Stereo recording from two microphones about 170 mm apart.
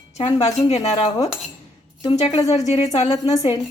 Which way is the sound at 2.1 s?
40° left (ahead or behind).